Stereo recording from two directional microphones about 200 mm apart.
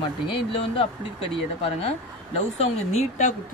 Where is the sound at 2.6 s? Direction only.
35° left (ahead or behind).